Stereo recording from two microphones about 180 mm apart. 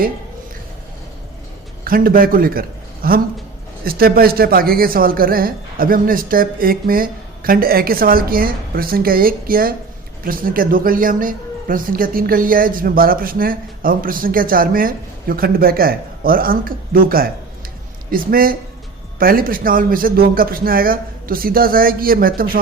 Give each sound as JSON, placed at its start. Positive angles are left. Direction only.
{"t": 1.8, "sound": "a man's voice", "side_deg": -55}